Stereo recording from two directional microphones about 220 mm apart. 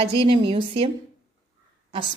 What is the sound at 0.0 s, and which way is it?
Speech, 25° right (ahead or behind).